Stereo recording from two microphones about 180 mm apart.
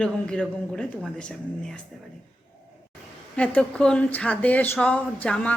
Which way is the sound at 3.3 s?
10° left (ahead or behind).